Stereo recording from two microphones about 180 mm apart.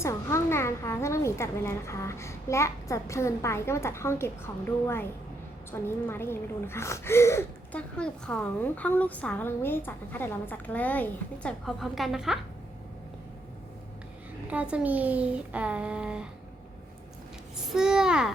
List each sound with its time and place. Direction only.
0.0 s a woman's voice: 15° left (ahead or behind); by 12.4 s centre (ahead or behind)
14.5 s a child's voice: 5° right (ahead or behind)
17.7 s a child's voice: 5° right (ahead or behind)